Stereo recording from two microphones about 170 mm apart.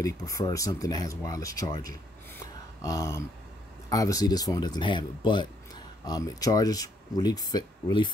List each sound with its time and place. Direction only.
0.0 s speech: 20° left (ahead or behind)